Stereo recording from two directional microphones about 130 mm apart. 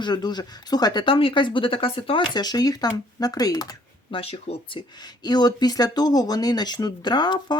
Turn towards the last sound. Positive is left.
turn(degrees=35)  # may be behind; listen again after turning